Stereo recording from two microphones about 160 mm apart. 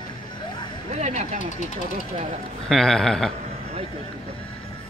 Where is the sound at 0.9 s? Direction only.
45° right (ahead or behind).